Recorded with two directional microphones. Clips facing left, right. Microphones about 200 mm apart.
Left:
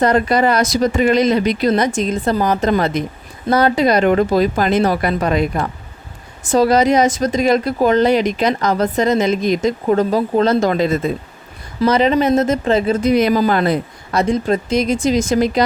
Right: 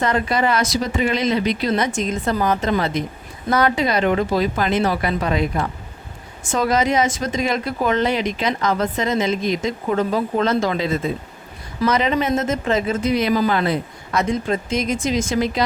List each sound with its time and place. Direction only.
0.0 s speech: 40° left (ahead or behind)
3.5 s speech: 35° left (ahead or behind)
6.4 s speech: 35° left (ahead or behind)
11.8 s speech: 30° left (ahead or behind)